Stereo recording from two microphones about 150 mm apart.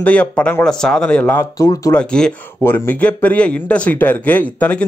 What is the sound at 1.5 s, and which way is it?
Speech, 20° left (ahead or behind).